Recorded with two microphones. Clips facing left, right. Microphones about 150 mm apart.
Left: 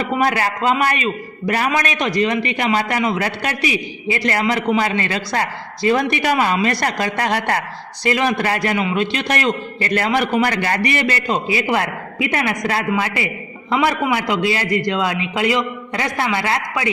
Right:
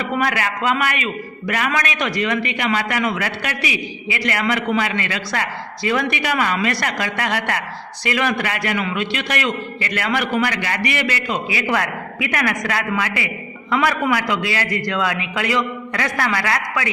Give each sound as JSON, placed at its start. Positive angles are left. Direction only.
{"t": 0.2, "sound": "a man's voice", "side_deg": 35}